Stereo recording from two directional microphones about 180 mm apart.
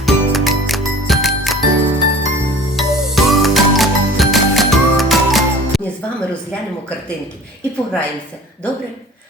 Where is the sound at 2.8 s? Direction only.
Centre (ahead or behind).